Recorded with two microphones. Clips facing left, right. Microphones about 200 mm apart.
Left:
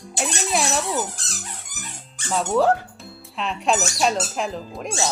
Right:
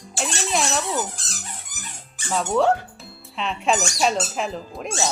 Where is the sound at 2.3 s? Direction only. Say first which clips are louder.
Left 1 dB; centre (ahead or behind).